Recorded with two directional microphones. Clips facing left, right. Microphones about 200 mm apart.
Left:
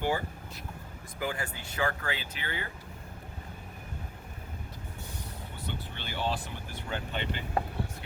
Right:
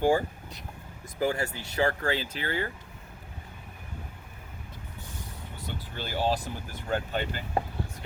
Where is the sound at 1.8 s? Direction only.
40° right (ahead or behind).